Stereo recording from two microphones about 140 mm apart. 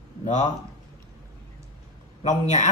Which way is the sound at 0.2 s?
60° left (ahead or behind).